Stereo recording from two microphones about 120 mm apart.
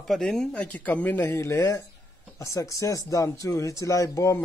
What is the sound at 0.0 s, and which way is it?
Speech, 5° left (ahead or behind).